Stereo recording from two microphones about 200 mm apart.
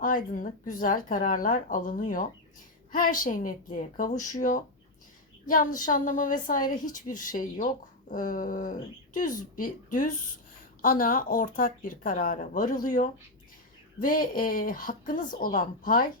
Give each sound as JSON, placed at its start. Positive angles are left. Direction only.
{"t": 0.3, "sound": "a woman's voice", "side_deg": 40}